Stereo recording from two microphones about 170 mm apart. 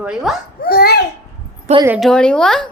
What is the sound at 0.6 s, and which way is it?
Speech, 65° left (ahead or behind).